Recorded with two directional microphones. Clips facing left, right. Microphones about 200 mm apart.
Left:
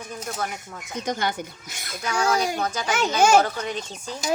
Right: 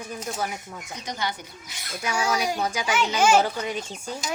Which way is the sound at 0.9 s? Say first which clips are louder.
Left 5 dB; 50° left (ahead or behind).